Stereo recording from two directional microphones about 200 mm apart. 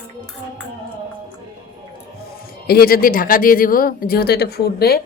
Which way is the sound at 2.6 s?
50° left (ahead or behind).